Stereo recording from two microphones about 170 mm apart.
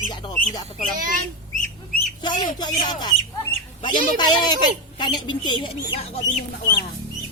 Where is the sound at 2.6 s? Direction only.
25° left (ahead or behind).